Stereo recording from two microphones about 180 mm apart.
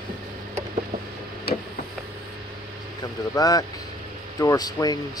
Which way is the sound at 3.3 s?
20° left (ahead or behind).